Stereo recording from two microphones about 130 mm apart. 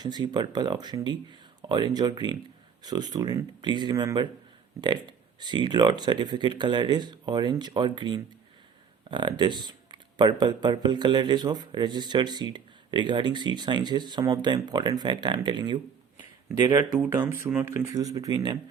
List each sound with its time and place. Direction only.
0.0 s speech: 35° right (ahead or behind)
17.0 s speech: 20° right (ahead or behind)
17.9 s speech: 30° right (ahead or behind)